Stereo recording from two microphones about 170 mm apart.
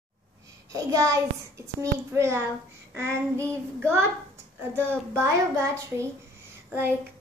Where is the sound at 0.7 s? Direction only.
20° right (ahead or behind).